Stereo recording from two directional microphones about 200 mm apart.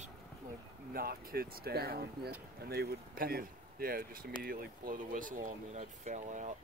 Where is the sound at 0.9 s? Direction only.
50° right (ahead or behind).